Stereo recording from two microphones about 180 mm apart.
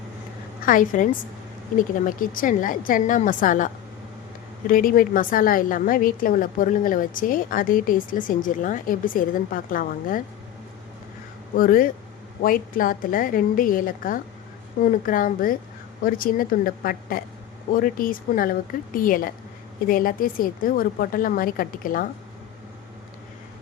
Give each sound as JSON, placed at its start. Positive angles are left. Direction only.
{"t": 0.6, "sound": "a woman's voice", "side_deg": 50}
{"t": 2.0, "sound": "a woman's voice", "side_deg": 50}
{"t": 11.5, "sound": "a woman's voice", "side_deg": 50}